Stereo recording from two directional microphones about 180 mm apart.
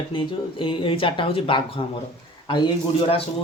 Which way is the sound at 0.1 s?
30° left (ahead or behind).